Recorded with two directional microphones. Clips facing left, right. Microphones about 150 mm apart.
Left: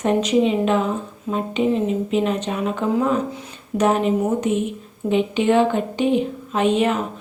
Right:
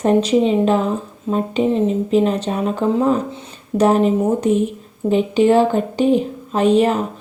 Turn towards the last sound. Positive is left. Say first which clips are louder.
# right 4 dB
turn(degrees=-35)  # may be behind; listen again after turning